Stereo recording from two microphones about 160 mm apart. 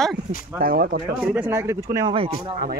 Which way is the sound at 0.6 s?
65° right (ahead or behind).